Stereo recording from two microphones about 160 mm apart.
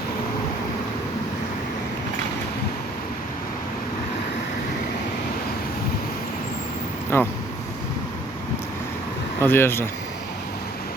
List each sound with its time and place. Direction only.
7.1 s speech: 15° left (ahead or behind)
9.4 s speech: 15° left (ahead or behind)